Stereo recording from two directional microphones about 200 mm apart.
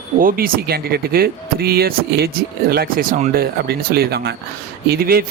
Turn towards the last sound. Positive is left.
turn(degrees=-50)  # may be behind; listen again after turning